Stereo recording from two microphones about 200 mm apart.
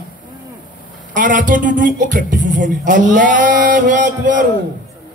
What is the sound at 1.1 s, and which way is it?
Speech, 40° right (ahead or behind).